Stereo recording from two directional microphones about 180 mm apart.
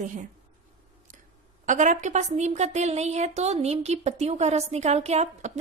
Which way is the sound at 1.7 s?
45° right (ahead or behind).